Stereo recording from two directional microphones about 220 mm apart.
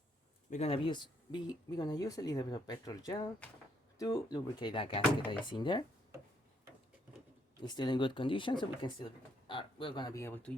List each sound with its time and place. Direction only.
0.5 s speech: 25° left (ahead or behind)
7.6 s speech: 20° left (ahead or behind)